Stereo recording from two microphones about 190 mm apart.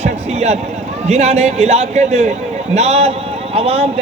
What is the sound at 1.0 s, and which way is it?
A man's voice, 35° right (ahead or behind).